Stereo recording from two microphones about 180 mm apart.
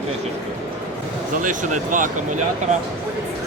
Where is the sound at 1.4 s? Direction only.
45° right (ahead or behind).